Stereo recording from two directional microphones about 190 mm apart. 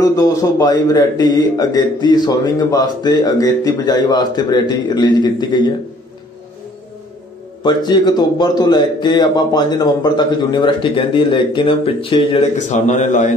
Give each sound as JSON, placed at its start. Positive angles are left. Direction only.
{"t": 0.0, "sound": "a man's voice", "side_deg": 20}
{"t": 7.6, "sound": "a man's voice", "side_deg": 25}